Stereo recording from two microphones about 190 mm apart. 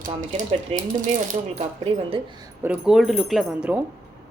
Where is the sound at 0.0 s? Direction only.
45° right (ahead or behind).